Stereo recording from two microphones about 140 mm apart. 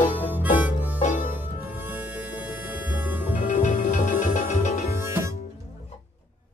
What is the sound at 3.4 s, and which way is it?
Music, 60° left (ahead or behind).